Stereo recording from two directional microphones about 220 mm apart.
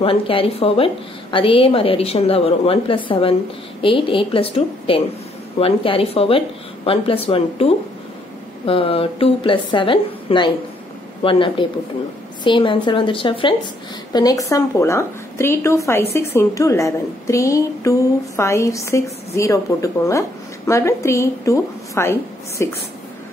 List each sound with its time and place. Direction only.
0.0 s a woman's voice: 25° left (ahead or behind)